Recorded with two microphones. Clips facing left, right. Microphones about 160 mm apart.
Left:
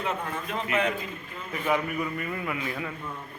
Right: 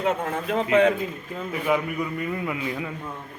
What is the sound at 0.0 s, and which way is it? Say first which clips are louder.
Speech: right 6 dB; 75° right (ahead or behind).